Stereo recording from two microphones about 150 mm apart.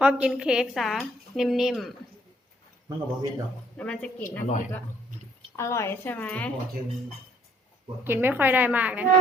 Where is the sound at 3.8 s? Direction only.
5° left (ahead or behind).